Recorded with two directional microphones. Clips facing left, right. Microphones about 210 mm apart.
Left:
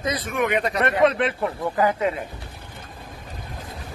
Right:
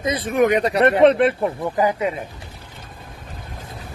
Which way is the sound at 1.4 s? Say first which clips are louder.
Right 2 dB; 15° right (ahead or behind).